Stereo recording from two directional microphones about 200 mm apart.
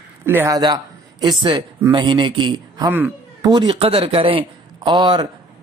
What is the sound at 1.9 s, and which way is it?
Speech, 25° right (ahead or behind).